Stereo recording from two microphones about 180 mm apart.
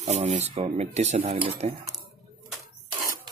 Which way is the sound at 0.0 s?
40° right (ahead or behind).